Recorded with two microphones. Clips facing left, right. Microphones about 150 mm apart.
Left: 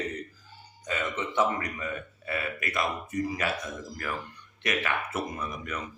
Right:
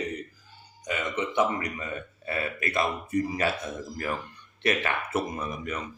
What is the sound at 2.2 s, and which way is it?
Speech, 30° right (ahead or behind).